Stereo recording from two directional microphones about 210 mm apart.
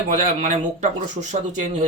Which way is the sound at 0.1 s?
35° right (ahead or behind).